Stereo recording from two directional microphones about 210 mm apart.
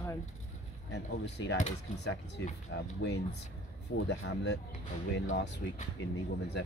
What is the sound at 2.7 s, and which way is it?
Speech, 55° left (ahead or behind).